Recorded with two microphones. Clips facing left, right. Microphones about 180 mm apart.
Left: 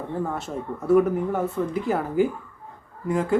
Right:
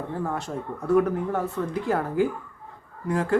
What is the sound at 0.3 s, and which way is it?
Speech, 5° left (ahead or behind).